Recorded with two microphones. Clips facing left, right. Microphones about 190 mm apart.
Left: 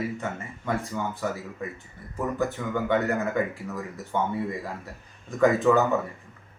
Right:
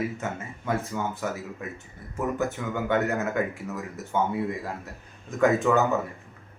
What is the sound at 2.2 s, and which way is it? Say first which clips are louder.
Speech: even; centre (ahead or behind).